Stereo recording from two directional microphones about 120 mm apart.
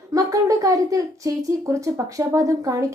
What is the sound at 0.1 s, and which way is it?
Speech, 30° right (ahead or behind).